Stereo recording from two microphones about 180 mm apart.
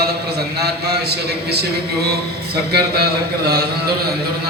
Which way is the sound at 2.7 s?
60° right (ahead or behind).